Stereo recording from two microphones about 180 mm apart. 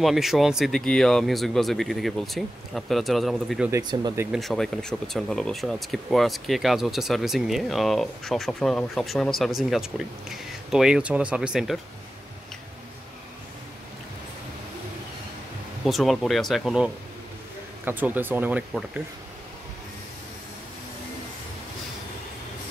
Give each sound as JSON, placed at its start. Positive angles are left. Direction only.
{"t": 0.0, "sound": "speech", "side_deg": 0}
{"t": 3.7, "sound": "speech", "side_deg": -25}
{"t": 4.3, "sound": "speech", "side_deg": 0}
{"t": 15.8, "sound": "speech", "side_deg": 0}